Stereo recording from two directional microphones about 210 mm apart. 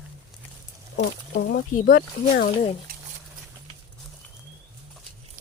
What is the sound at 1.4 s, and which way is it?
Speech, 45° left (ahead or behind).